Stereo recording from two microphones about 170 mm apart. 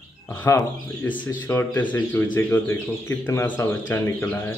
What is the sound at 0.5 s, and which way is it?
Speech, 15° left (ahead or behind).